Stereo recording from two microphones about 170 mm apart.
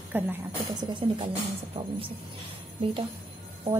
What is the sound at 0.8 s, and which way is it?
Speech, 25° right (ahead or behind).